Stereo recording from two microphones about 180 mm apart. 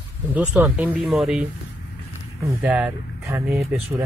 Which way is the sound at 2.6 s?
10° right (ahead or behind).